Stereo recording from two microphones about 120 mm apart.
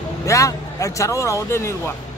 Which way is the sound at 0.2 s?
25° left (ahead or behind).